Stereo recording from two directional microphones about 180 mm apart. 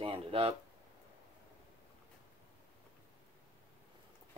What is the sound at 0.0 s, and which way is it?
Speech, 30° right (ahead or behind).